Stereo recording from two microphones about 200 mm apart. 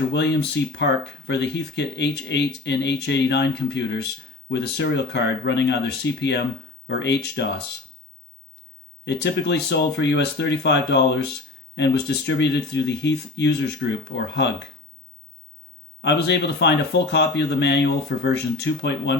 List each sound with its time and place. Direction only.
0.1 s speech: 60° left (ahead or behind)
9.0 s speech: 60° left (ahead or behind)
16.0 s speech: 60° left (ahead or behind)